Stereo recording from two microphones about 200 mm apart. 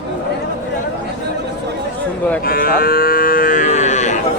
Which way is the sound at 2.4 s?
45° left (ahead or behind).